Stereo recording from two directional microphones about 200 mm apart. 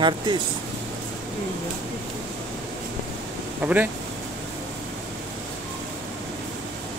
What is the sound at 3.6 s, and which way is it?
Speech, 10° right (ahead or behind).